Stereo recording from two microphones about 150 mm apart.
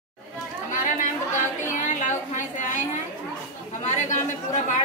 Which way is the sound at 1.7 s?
55° left (ahead or behind).